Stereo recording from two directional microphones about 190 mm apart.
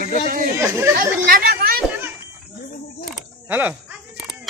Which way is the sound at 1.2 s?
50° right (ahead or behind).